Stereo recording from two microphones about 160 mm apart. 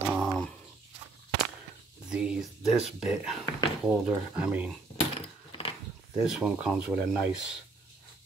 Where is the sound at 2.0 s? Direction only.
5° right (ahead or behind).